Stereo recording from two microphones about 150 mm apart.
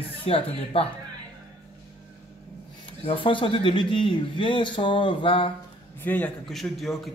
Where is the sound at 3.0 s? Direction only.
35° left (ahead or behind).